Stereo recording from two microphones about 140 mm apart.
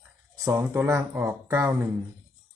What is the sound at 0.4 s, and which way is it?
Speech, 20° right (ahead or behind).